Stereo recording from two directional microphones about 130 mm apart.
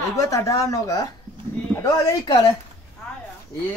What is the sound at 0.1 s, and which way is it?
Speech, 25° left (ahead or behind).